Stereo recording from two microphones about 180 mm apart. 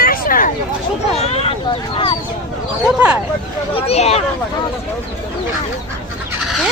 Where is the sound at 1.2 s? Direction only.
35° left (ahead or behind).